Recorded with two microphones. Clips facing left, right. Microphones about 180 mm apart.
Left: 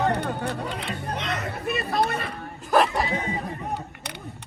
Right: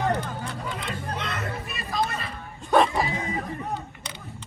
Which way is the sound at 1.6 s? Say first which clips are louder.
Left 6 dB; 65° left (ahead or behind).